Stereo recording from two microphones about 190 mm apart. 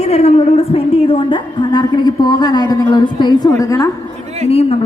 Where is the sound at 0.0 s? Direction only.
35° left (ahead or behind); by 3.8 s 15° left (ahead or behind).